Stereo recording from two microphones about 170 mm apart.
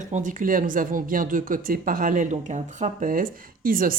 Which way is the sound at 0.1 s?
50° right (ahead or behind).